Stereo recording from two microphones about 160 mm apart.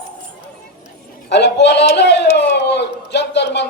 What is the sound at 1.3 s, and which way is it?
Speech, 90° left.